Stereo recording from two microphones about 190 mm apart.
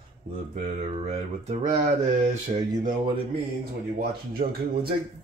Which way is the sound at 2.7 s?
20° right (ahead or behind).